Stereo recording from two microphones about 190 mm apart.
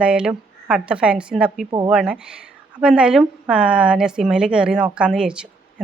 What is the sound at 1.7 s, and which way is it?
Speech, 20° right (ahead or behind).